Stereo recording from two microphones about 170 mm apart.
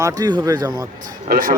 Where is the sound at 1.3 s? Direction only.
55° right (ahead or behind).